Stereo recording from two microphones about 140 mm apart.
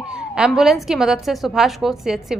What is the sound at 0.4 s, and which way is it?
A woman's voice, 5° right (ahead or behind).